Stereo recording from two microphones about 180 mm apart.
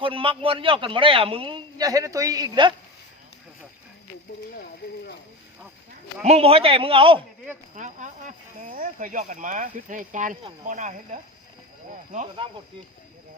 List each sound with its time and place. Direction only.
0.0 s a man's voice: 30° right (ahead or behind)
4.3 s speech: 50° left (ahead or behind)
6.2 s a man's voice: 35° right (ahead or behind)
7.8 s speech: 45° right (ahead or behind)